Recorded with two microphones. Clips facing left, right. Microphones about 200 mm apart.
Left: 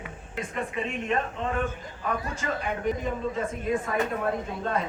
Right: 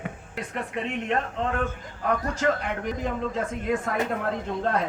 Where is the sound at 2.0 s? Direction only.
85° right.